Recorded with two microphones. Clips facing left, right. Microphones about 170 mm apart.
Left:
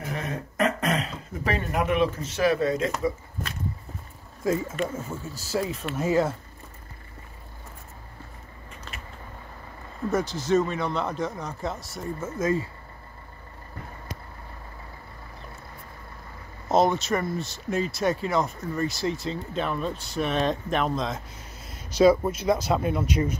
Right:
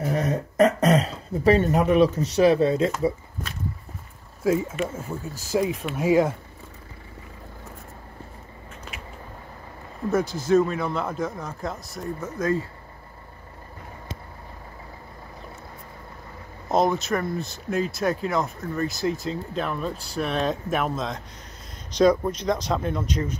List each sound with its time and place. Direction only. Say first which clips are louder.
0.1 s throat clearing: right 5 dB; 40° right (ahead or behind)
4.4 s speech: right 3 dB; 10° right (ahead or behind)
10.1 s speech: right 3 dB; centre (ahead or behind)
16.6 s speech: even; centre (ahead or behind)